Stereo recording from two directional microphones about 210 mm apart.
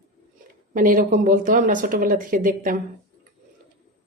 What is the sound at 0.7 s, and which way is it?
A woman's voice, 40° right (ahead or behind).